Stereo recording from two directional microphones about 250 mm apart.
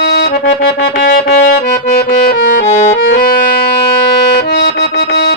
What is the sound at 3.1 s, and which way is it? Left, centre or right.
Music, left.